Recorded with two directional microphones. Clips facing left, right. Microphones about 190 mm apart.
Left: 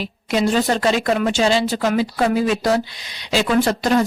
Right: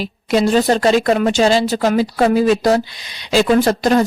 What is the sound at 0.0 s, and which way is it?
A woman's voice, 35° right (ahead or behind).